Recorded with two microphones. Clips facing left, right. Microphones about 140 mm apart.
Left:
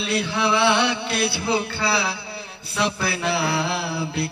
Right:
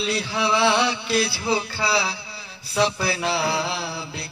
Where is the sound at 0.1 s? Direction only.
60° left (ahead or behind).